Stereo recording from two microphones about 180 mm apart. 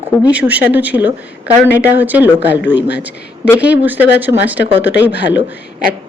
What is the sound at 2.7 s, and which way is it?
Speech, 70° left (ahead or behind).